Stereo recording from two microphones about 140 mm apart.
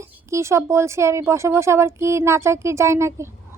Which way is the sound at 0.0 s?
20° right (ahead or behind).